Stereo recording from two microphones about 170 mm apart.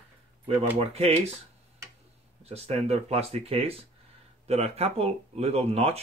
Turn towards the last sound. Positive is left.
turn(degrees=-35)  # may be behind; listen again after turning